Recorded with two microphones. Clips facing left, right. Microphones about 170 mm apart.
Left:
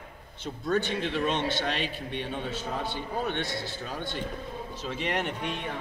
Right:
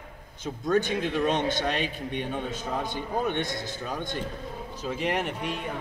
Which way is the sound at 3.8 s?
45° right (ahead or behind).